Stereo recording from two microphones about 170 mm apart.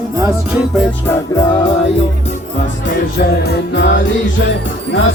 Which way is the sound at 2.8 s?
65° left (ahead or behind).